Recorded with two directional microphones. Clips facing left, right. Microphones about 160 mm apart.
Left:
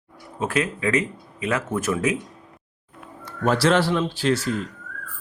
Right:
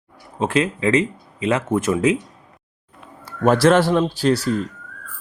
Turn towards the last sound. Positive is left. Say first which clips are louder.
# right 4 dB
turn(degrees=-40)  # may be behind; listen again after turning